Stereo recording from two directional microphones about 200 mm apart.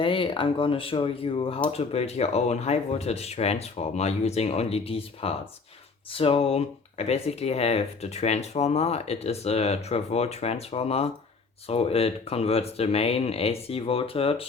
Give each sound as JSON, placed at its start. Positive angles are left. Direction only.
{"t": 0.0, "sound": "speech", "side_deg": 25}